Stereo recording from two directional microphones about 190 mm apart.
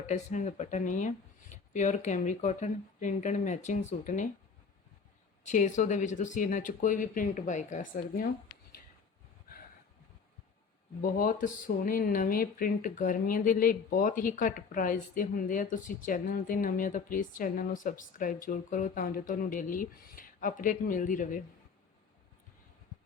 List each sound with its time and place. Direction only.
0.1 s speech: 40° left (ahead or behind)
5.4 s speech: 40° left (ahead or behind)
11.0 s speech: 45° left (ahead or behind)